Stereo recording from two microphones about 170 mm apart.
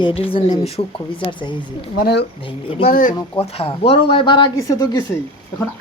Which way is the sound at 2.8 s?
55° left (ahead or behind).